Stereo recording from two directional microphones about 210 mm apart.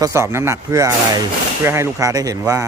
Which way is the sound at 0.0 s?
15° right (ahead or behind).